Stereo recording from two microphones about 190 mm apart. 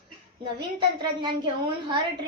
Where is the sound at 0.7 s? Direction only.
25° right (ahead or behind).